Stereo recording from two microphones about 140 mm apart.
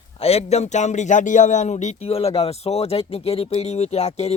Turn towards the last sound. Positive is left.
turn(degrees=50)  # may be behind; listen again after turning